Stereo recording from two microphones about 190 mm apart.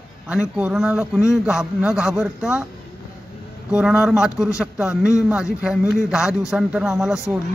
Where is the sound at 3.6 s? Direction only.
5° right (ahead or behind).